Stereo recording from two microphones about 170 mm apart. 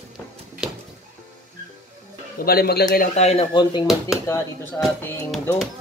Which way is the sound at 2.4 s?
65° left (ahead or behind).